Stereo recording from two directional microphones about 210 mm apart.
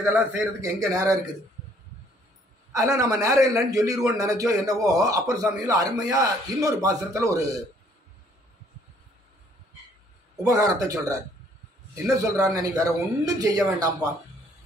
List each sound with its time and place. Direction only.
0.1 s a man's voice: 15° right (ahead or behind)
2.7 s a man's voice: 15° right (ahead or behind)
10.4 s a man's voice: 15° right (ahead or behind)
12.3 s a man's voice: 15° right (ahead or behind)